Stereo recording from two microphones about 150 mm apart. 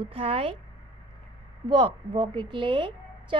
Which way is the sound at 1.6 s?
30° right (ahead or behind).